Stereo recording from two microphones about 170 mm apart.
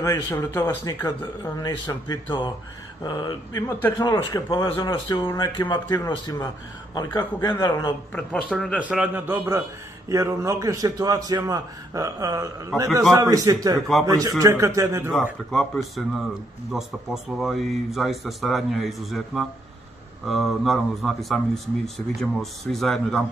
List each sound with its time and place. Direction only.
0.0 s speech: 15° left (ahead or behind)
8.1 s a man's voice: 5° left (ahead or behind)
8.8 s a man's voice: 5° right (ahead or behind)
15.5 s speech: centre (ahead or behind)